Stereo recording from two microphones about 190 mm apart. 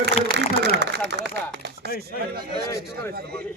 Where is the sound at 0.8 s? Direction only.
65° right (ahead or behind).